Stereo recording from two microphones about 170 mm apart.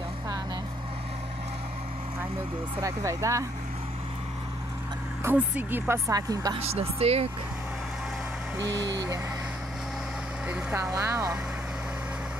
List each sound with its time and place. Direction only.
2.8 s a woman's voice: 20° right (ahead or behind)
5.2 s a woman's voice: 10° right (ahead or behind)
6.6 s speech: 35° right (ahead or behind)
10.5 s a woman's voice: 15° right (ahead or behind)